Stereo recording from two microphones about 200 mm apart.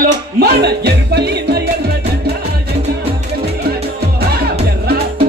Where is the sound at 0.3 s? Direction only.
55° right (ahead or behind).